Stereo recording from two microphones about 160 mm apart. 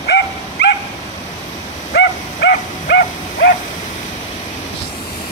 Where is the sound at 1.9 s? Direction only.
90° left.